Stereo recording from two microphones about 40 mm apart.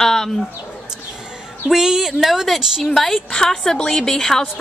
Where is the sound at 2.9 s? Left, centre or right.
Centre.